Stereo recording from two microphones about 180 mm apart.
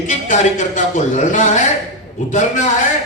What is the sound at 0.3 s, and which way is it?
A man's voice, 45° left (ahead or behind).